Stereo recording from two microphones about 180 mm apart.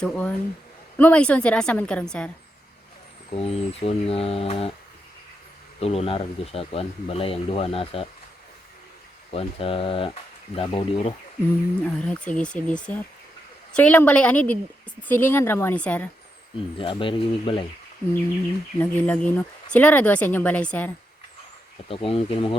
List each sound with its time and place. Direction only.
0.0 s a woman's voice: 10° left (ahead or behind)
3.3 s speech: 30° left (ahead or behind)
5.8 s speech: 35° left (ahead or behind)
9.3 s speech: 30° left (ahead or behind)
11.8 s a woman's voice: 5° left (ahead or behind)
16.7 s speech: 30° left (ahead or behind)
18.8 s a woman's voice: 10° left (ahead or behind)
21.8 s speech: 30° left (ahead or behind)